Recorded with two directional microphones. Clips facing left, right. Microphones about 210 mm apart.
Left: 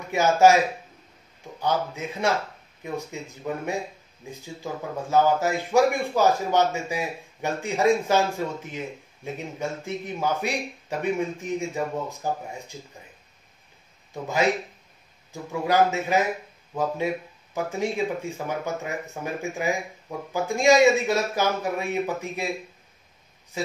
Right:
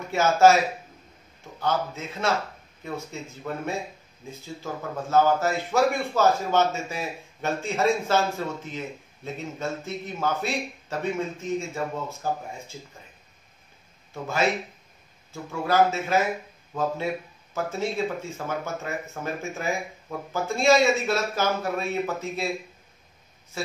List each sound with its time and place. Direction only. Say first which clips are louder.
0.1 s speech: left 1 dB; 15° left (ahead or behind)
1.6 s speech: left 1 dB; 15° left (ahead or behind)
14.1 s speech: left 2 dB; 15° left (ahead or behind)